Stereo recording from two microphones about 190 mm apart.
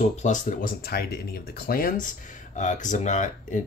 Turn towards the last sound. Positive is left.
turn(degrees=40)  # may be behind; listen again after turning